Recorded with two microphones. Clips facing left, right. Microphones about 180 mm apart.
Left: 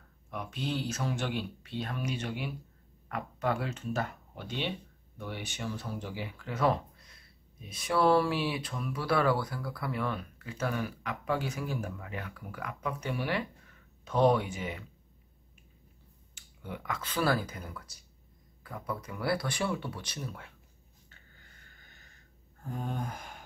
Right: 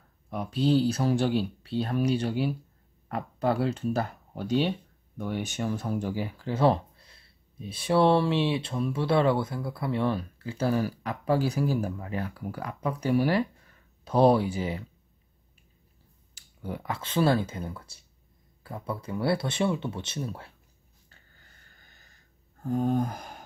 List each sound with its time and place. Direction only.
0.3 s speech: 35° right (ahead or behind)
16.3 s speech: 35° right (ahead or behind)
22.6 s a sound: 40° right (ahead or behind)